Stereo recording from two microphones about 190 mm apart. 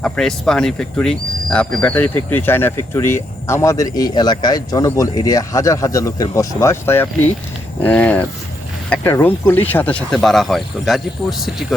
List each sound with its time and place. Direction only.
0.0 s speech: 5° left (ahead or behind)